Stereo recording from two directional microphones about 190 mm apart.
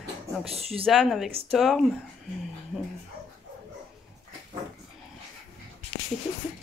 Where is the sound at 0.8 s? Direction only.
Centre (ahead or behind).